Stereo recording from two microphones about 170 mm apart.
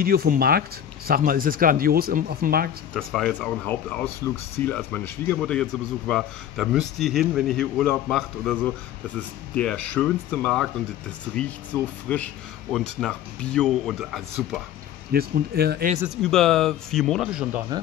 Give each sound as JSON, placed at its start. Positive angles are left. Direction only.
{"t": 0.0, "sound": "speech", "side_deg": -60}
{"t": 2.9, "sound": "a man's voice", "side_deg": 0}
{"t": 15.1, "sound": "speech", "side_deg": -65}
{"t": 16.2, "sound": "a man's voice", "side_deg": 5}